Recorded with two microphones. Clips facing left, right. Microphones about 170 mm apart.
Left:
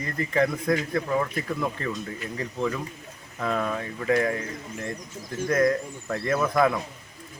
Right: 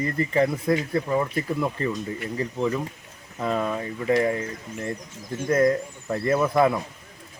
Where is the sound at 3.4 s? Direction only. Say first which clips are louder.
Right 2 dB; 10° right (ahead or behind).